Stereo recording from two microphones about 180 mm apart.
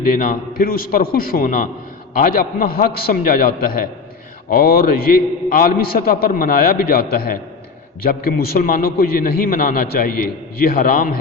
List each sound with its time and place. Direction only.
0.2 s a man's voice: 50° left (ahead or behind)